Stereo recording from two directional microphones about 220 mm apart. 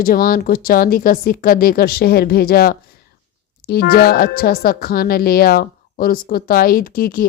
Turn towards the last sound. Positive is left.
turn(degrees=40)  # may be behind; listen again after turning